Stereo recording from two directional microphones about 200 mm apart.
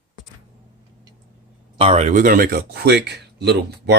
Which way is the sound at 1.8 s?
30° right (ahead or behind).